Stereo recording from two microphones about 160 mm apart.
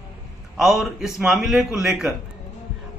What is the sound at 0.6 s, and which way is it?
A man's voice, centre (ahead or behind).